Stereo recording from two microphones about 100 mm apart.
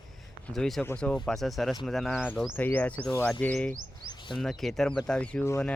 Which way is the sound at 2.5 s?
20° left (ahead or behind).